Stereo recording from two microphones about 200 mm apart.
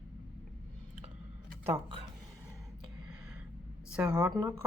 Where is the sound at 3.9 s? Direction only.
5° right (ahead or behind).